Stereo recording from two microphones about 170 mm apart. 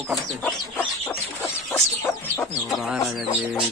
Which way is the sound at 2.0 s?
15° left (ahead or behind).